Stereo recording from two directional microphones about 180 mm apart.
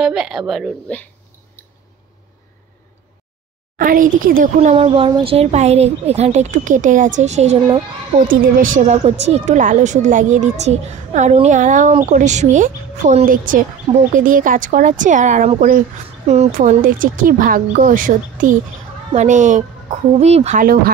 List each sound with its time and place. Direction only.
0.0 s speech: 5° right (ahead or behind)
3.7 s a child's voice: 50° right (ahead or behind)
4.6 s a woman's voice: 35° right (ahead or behind)
20.6 s speech: 55° right (ahead or behind)